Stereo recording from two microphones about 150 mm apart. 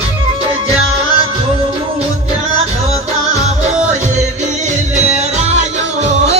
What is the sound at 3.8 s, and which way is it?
Music, 50° right (ahead or behind).